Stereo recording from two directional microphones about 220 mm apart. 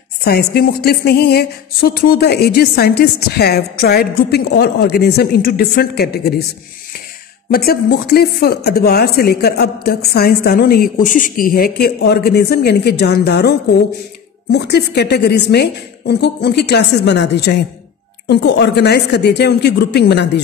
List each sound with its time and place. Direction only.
0.2 s speech: 45° left (ahead or behind)
7.5 s speech: 45° left (ahead or behind)